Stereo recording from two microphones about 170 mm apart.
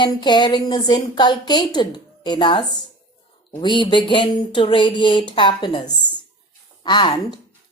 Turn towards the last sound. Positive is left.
turn(degrees=25)  # may be behind; listen again after turning